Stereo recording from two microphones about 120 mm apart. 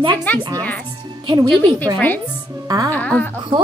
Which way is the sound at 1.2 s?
40° right (ahead or behind).